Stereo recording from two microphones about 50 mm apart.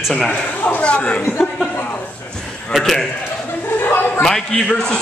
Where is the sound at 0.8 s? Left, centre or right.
Left.